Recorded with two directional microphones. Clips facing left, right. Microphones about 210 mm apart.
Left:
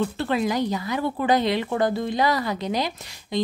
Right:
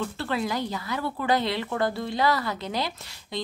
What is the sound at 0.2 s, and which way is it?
Speech, 20° left (ahead or behind).